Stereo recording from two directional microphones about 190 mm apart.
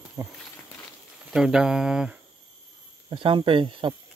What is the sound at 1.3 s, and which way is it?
Speech, 5° right (ahead or behind).